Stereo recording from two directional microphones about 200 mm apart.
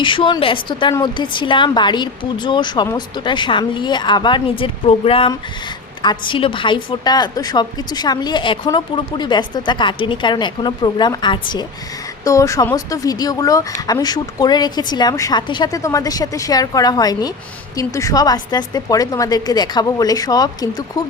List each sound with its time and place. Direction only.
0.0 s a woman's voice: 25° left (ahead or behind)